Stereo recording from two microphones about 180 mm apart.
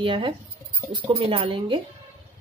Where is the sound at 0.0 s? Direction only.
30° right (ahead or behind).